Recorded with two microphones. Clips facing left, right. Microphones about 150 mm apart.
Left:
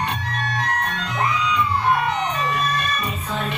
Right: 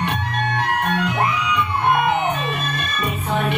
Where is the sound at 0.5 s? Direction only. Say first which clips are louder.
Right 5 dB; 60° right (ahead or behind).